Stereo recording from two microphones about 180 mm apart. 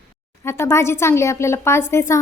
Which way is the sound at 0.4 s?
15° left (ahead or behind).